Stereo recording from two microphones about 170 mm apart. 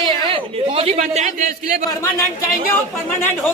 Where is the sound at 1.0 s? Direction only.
45° right (ahead or behind).